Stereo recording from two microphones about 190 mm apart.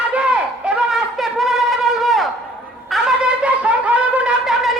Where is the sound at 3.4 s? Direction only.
5° right (ahead or behind).